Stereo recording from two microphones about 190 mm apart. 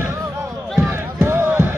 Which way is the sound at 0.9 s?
10° right (ahead or behind).